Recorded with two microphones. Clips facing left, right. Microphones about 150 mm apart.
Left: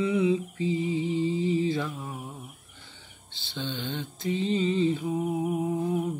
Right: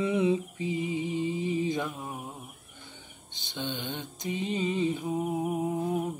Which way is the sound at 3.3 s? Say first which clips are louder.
Left 1 dB; 15° right (ahead or behind).